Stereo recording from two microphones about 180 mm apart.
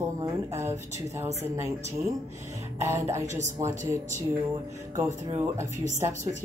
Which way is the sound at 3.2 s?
40° right (ahead or behind).